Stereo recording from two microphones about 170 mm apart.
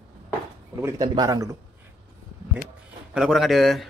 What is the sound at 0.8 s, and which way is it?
Speech, 20° right (ahead or behind).